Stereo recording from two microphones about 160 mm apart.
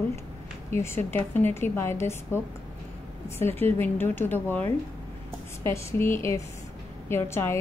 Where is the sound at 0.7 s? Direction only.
15° left (ahead or behind).